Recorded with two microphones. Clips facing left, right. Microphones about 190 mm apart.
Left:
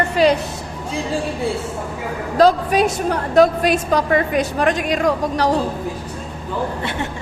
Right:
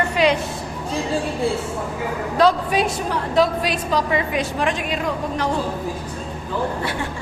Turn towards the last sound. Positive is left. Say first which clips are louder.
# left 5 dB
turn(degrees=40)  # may be behind; listen again after turning